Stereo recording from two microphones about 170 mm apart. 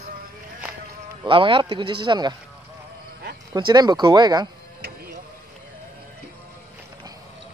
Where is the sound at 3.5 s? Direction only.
25° right (ahead or behind).